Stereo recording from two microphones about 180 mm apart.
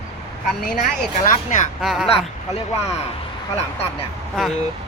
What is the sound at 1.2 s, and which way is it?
Speech, 45° left (ahead or behind).